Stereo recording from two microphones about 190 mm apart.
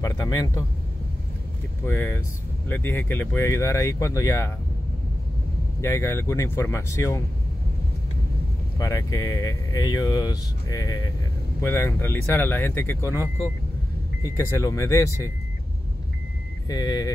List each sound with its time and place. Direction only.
0.0 s speech: 15° left (ahead or behind)
1.9 s speech: 15° left (ahead or behind)
5.8 s speech: 15° left (ahead or behind)
8.7 s speech: 15° left (ahead or behind)
16.6 s speech: 20° left (ahead or behind)